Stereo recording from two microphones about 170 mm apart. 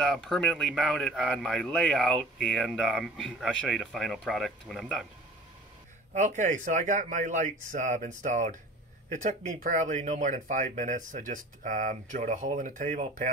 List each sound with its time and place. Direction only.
0.0 s speech: centre (ahead or behind)
6.1 s speech: 45° right (ahead or behind)